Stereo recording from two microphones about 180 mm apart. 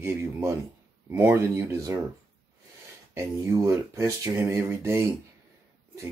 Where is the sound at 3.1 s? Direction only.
15° right (ahead or behind).